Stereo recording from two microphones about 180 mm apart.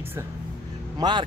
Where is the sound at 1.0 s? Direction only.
25° right (ahead or behind).